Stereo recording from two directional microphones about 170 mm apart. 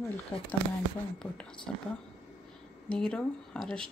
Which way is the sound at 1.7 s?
5° left (ahead or behind).